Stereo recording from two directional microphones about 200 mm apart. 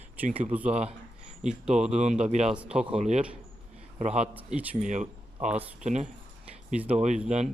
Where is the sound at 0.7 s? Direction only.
30° right (ahead or behind).